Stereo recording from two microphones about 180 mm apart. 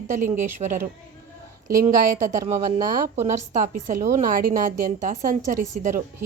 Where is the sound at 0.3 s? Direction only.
45° right (ahead or behind).